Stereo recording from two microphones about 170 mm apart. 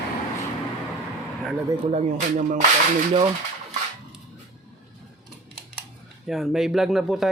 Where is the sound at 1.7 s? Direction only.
35° right (ahead or behind).